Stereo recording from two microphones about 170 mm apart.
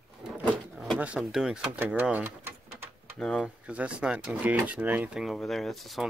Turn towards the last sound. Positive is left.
turn(degrees=0)  # may be behind; listen again after turning